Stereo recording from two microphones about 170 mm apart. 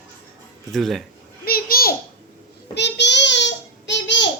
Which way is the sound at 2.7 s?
90° left.